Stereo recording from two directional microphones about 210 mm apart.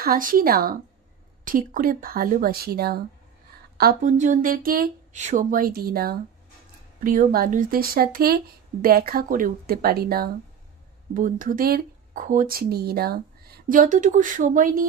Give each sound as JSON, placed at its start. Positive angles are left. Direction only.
{"t": 0.0, "sound": "speech", "side_deg": -45}